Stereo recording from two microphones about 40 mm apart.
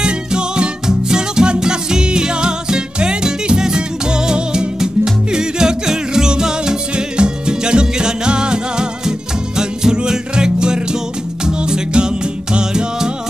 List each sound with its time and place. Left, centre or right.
0.0 s music: right